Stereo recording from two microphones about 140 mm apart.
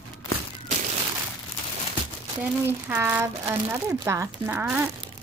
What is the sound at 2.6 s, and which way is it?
Speech, 15° right (ahead or behind).